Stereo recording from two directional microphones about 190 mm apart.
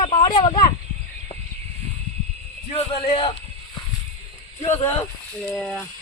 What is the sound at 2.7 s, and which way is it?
Speech, 30° left (ahead or behind).